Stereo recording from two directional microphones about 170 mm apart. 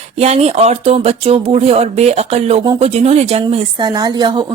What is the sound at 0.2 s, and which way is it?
Speech, 40° right (ahead or behind).